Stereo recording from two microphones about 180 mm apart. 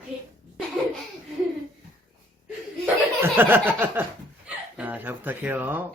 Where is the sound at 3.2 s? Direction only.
10° right (ahead or behind).